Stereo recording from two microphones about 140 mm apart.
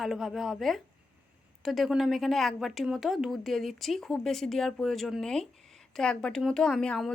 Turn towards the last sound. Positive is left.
turn(degrees=5)  # may be behind; listen again after turning